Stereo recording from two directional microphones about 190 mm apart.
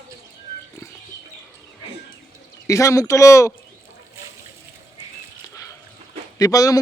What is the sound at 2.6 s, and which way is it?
Speech, 15° left (ahead or behind).